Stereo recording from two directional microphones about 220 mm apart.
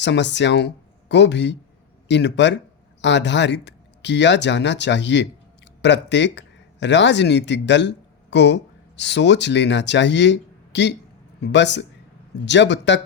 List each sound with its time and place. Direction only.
0.0 s speech: 50° left (ahead or behind)